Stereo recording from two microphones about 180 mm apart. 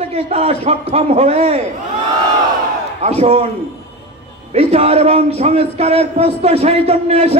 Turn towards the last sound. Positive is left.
turn(degrees=-35)  # may be behind; listen again after turning